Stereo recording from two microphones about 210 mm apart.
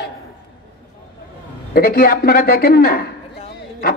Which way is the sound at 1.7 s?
45° left (ahead or behind).